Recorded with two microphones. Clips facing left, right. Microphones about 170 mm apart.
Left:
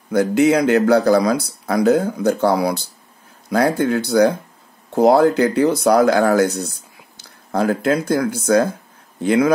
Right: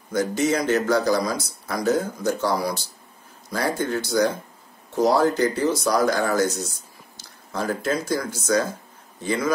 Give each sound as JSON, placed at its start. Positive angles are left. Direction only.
{"t": 0.1, "sound": "speech", "side_deg": 60}